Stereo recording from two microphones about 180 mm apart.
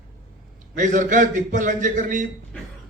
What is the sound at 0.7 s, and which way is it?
A man's voice, 45° right (ahead or behind).